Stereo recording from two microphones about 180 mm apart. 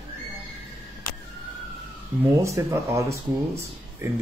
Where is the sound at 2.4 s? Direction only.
15° right (ahead or behind).